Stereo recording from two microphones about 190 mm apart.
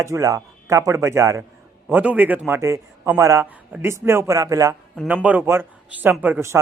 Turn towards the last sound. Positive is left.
turn(degrees=-10)  # may be behind; listen again after turning